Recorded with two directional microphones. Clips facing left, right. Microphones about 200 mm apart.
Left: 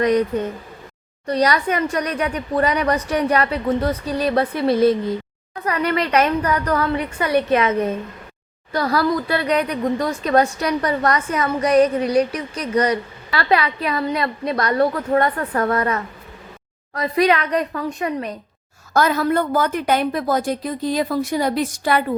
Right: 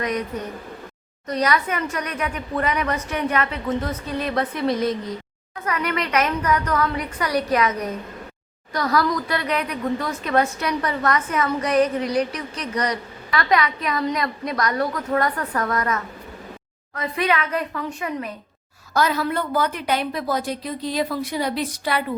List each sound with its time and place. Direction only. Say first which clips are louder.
0.3 s a woman's voice: left 6 dB; 30° left (ahead or behind)
18.9 s a woman's voice: left 4 dB; 50° left (ahead or behind)